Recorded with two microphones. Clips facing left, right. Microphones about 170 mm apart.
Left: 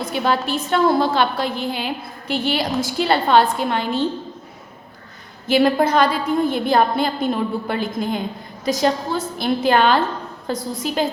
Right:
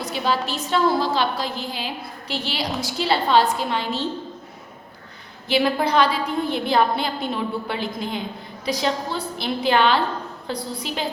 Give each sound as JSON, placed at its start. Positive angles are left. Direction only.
{"t": 0.0, "sound": "a woman's voice", "side_deg": 55}
{"t": 5.5, "sound": "a woman's voice", "side_deg": 45}